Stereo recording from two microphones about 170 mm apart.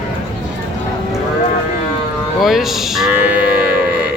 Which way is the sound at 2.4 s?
Centre (ahead or behind).